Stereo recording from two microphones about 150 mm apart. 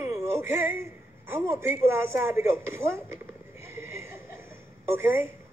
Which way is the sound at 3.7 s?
20° right (ahead or behind).